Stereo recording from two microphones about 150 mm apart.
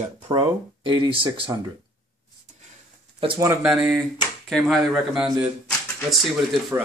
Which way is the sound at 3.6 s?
5° right (ahead or behind).